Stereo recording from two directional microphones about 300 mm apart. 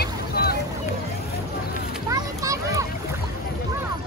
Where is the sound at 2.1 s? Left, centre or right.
Centre.